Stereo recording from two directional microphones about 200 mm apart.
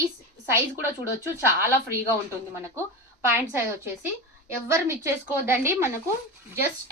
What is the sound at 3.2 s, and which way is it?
Speech, 10° right (ahead or behind).